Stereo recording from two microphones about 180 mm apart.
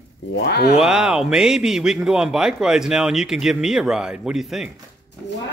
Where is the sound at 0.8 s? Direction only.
5° right (ahead or behind).